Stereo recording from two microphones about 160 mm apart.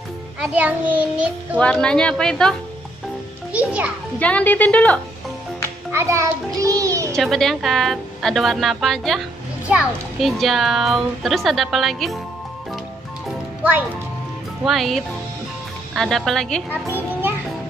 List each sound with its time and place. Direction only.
0.4 s a child's voice: 10° right (ahead or behind)
1.6 s a child's voice: 5° left (ahead or behind)
3.5 s a child's voice: 10° right (ahead or behind)
4.2 s speech: 10° left (ahead or behind)
5.9 s a child's voice: 15° right (ahead or behind)
7.2 s a child's voice: centre (ahead or behind)
14.6 s a child's voice: centre (ahead or behind)